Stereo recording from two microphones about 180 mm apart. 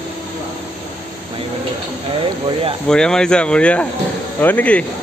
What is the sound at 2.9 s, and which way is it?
Speech, 5° left (ahead or behind).